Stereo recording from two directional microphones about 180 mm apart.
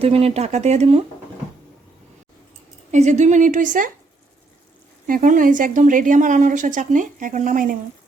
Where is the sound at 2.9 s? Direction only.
40° right (ahead or behind).